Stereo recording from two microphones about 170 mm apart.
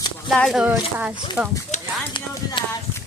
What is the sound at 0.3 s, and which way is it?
Speech, centre (ahead or behind).